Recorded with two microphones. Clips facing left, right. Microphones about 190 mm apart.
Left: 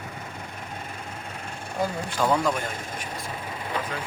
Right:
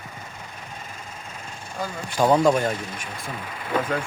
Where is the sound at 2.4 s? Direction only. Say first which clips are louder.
Right 7 dB; 40° right (ahead or behind).